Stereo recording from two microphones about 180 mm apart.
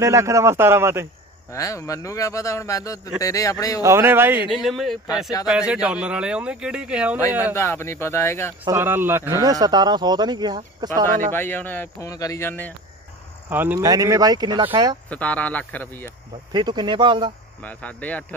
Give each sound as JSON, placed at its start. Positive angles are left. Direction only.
{"t": 0.0, "sound": "a man's voice", "side_deg": -15}
{"t": 1.5, "sound": "a man's voice", "side_deg": 15}
{"t": 3.8, "sound": "a man's voice", "side_deg": -15}
{"t": 4.5, "sound": "speech", "side_deg": 0}
{"t": 7.5, "sound": "a man's voice", "side_deg": 15}
{"t": 8.6, "sound": "a man's voice", "side_deg": -15}
{"t": 11.3, "sound": "a man's voice", "side_deg": 10}
{"t": 13.5, "sound": "a man's voice", "side_deg": -10}
{"t": 15.0, "sound": "a man's voice", "side_deg": 10}
{"t": 16.5, "sound": "a man's voice", "side_deg": -25}
{"t": 17.6, "sound": "a man's voice", "side_deg": 10}